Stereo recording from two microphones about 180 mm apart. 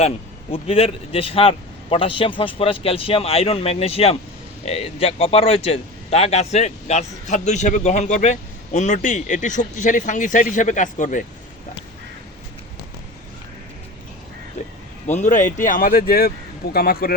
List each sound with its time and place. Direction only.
0.5 s a man's voice: 30° left (ahead or behind)
15.0 s speech: 40° left (ahead or behind)